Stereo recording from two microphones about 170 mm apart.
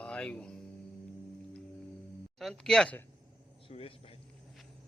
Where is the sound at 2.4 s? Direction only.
5° left (ahead or behind).